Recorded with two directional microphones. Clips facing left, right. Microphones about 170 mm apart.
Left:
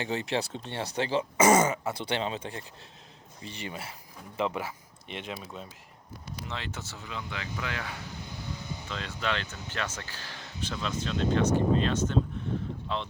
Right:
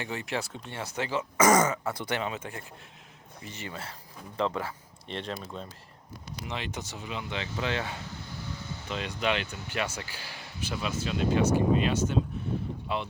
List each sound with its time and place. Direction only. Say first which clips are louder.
0.0 s speech: left 3 dB; 30° left (ahead or behind)
3.6 s speech: left 1 dB; 15° left (ahead or behind)
6.5 s speech: right 4 dB; 15° right (ahead or behind)
8.2 s vehicle: even; 15° left (ahead or behind)
8.9 s speech: right 4 dB; 15° right (ahead or behind)